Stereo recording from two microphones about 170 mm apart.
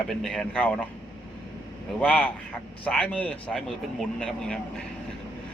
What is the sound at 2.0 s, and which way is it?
Speech, 10° left (ahead or behind).